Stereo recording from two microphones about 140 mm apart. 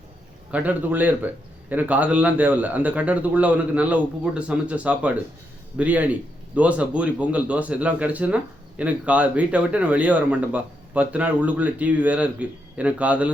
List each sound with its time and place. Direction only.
0.5 s speech: 10° right (ahead or behind)